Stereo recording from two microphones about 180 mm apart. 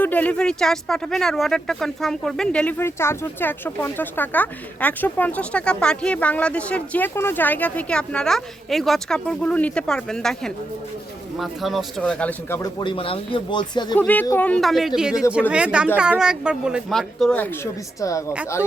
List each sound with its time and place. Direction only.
0.0 s speech: 10° left (ahead or behind)
12.8 s speech: 30° left (ahead or behind)
13.9 s speech: 5° left (ahead or behind)